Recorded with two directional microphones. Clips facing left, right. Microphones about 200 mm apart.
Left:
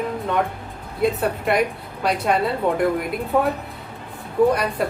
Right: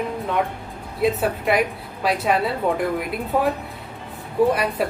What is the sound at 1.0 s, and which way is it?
Speech, centre (ahead or behind).